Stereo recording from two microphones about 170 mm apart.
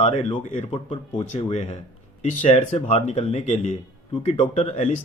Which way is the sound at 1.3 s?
45° left (ahead or behind).